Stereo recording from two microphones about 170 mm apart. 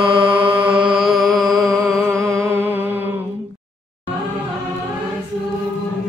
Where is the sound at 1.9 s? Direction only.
20° right (ahead or behind).